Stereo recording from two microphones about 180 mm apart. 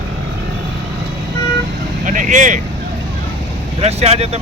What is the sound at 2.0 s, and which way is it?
Speech, 45° right (ahead or behind).